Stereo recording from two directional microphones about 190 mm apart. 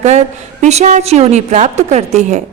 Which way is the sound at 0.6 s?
35° right (ahead or behind).